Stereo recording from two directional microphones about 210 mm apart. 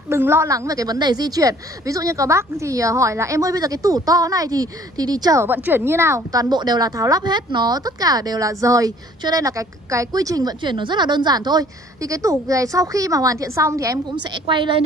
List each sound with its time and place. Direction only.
0.1 s a woman's voice: 10° right (ahead or behind)